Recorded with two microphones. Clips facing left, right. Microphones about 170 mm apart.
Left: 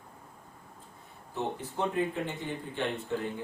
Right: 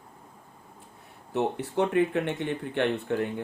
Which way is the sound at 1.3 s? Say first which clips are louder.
Right 7 dB; 70° right (ahead or behind).